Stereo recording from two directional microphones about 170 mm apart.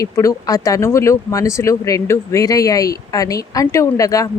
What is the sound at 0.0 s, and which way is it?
A woman's voice, 20° left (ahead or behind).